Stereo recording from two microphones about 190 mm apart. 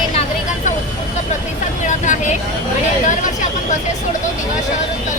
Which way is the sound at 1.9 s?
40° left (ahead or behind).